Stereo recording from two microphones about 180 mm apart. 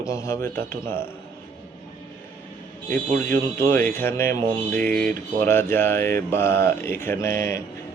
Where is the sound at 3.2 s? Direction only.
15° left (ahead or behind).